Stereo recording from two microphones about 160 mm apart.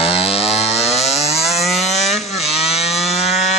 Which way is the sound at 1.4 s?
Centre (ahead or behind).